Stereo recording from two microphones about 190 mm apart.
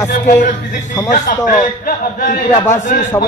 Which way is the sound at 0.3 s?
40° left (ahead or behind).